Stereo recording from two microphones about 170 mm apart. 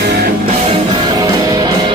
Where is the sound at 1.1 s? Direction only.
20° right (ahead or behind).